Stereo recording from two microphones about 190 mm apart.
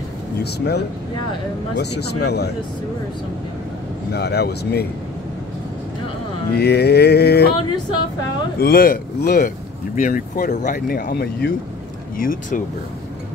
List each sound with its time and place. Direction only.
0.4 s mantra: 60° left (ahead or behind)
4.1 s mantra: 60° left (ahead or behind)
6.5 s mantra: 60° left (ahead or behind)
8.5 s speech: 55° left (ahead or behind)